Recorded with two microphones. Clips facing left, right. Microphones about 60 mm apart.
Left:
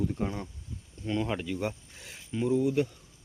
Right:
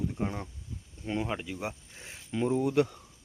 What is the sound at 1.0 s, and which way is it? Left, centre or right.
Speech, right.